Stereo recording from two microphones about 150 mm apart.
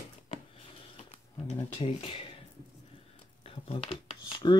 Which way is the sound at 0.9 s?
45° left (ahead or behind).